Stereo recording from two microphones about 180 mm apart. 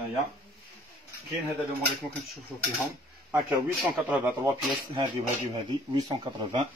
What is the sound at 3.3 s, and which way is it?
Speech, 5° right (ahead or behind).